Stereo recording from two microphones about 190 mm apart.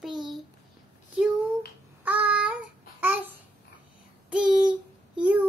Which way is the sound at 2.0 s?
10° right (ahead or behind).